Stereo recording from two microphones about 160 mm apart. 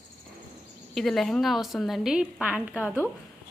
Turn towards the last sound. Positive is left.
turn(degrees=-10)  # may be behind; listen again after turning